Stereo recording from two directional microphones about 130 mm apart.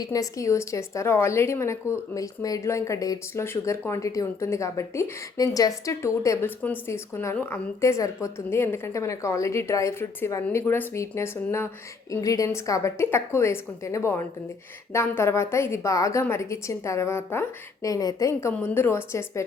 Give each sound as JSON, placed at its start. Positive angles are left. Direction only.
{"t": 0.0, "sound": "a woman's voice", "side_deg": 25}